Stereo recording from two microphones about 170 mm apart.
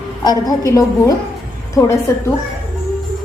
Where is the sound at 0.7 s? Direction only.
20° left (ahead or behind).